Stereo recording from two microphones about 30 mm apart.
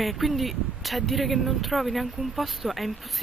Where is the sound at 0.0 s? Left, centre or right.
Centre.